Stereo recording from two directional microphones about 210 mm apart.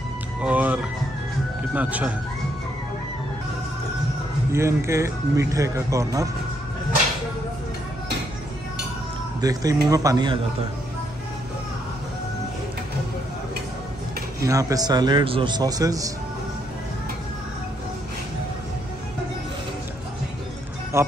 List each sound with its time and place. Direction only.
0.4 s speech: 5° right (ahead or behind)
4.5 s speech: 15° right (ahead or behind)
9.4 s speech: 15° right (ahead or behind)
14.4 s a man's voice: 15° right (ahead or behind)
20.9 s speech: 15° right (ahead or behind)